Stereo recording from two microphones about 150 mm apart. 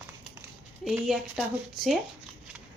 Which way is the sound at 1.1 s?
Centre (ahead or behind).